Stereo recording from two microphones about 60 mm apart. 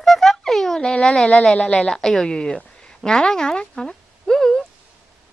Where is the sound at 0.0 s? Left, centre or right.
Centre.